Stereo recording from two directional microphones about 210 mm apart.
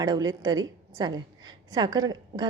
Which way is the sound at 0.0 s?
20° right (ahead or behind).